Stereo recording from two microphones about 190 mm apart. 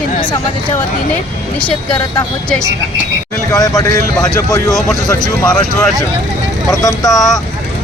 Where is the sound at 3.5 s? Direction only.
15° left (ahead or behind).